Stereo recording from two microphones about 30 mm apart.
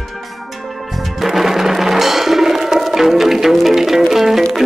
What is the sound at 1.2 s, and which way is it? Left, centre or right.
Music, centre.